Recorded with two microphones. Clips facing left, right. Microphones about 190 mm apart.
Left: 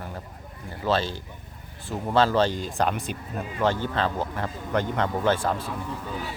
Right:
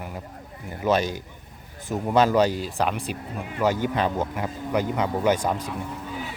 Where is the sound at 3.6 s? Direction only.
10° right (ahead or behind).